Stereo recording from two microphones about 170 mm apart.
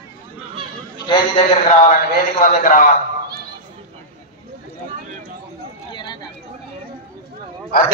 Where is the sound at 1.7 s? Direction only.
45° left (ahead or behind).